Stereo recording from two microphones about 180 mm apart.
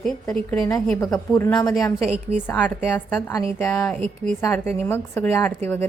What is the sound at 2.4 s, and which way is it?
Speech, 5° left (ahead or behind).